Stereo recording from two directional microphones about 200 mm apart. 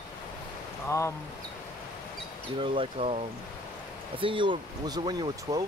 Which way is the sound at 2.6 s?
25° right (ahead or behind).